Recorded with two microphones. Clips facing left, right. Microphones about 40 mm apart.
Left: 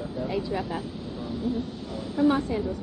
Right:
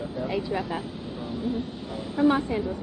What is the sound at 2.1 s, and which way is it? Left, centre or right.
Speech, right.